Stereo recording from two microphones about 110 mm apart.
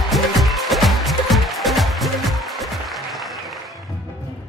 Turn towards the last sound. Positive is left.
turn(degrees=0)  # may be behind; listen again after turning